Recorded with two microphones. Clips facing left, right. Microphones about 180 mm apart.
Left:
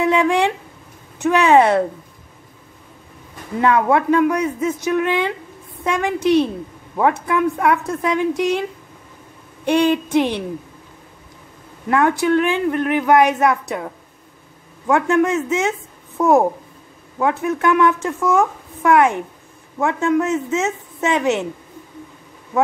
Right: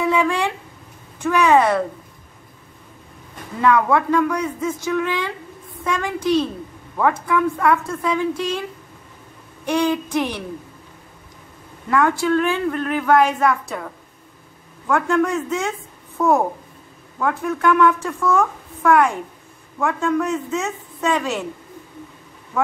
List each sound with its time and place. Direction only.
0.0 s a sound: 20° left (ahead or behind)
1.2 s speech: 25° left (ahead or behind)
3.6 s speech: 20° left (ahead or behind)
9.7 s speech: 20° left (ahead or behind)
11.9 s speech: 20° left (ahead or behind)
14.9 s speech: 20° left (ahead or behind)